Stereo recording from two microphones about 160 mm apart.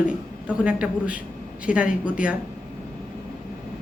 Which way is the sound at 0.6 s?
5° right (ahead or behind).